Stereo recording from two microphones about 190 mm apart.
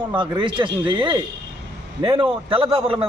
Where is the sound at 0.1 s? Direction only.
25° right (ahead or behind).